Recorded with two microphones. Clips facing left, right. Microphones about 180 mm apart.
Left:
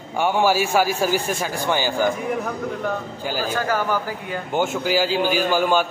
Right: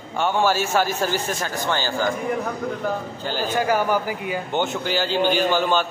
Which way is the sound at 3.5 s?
15° right (ahead or behind).